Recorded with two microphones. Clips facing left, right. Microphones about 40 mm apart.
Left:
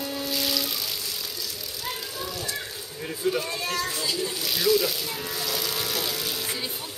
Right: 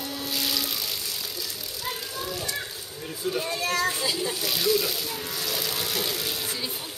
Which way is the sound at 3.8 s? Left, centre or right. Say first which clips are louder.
Right 2 dB; right.